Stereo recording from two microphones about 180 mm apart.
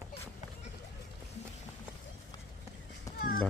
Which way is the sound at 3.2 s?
55° left (ahead or behind).